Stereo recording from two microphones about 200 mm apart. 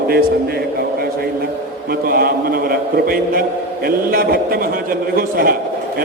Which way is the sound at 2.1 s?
50° right (ahead or behind).